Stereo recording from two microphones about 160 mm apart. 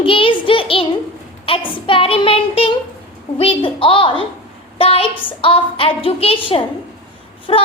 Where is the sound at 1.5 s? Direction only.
35° left (ahead or behind).